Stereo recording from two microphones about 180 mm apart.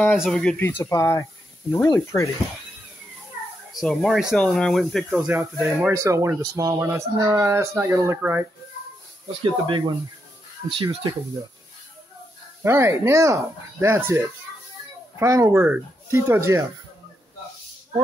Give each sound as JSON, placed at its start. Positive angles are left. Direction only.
{"t": 0.1, "sound": "speech", "side_deg": 0}
{"t": 3.7, "sound": "speech", "side_deg": 5}
{"t": 5.1, "sound": "speech", "side_deg": -10}
{"t": 9.4, "sound": "speech", "side_deg": -25}
{"t": 12.6, "sound": "speech", "side_deg": -15}